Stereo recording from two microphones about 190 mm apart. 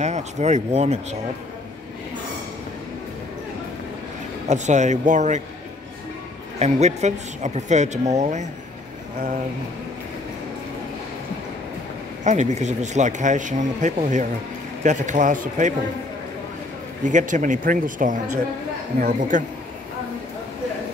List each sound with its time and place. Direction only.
0.0 s speech: 35° right (ahead or behind)
4.5 s speech: 40° right (ahead or behind)
6.6 s speech: 35° right (ahead or behind)
12.3 s speech: 40° right (ahead or behind)
17.0 s speech: 40° right (ahead or behind)